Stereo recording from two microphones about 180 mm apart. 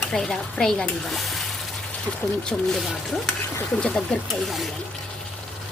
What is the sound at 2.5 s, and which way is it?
A woman's voice, centre (ahead or behind).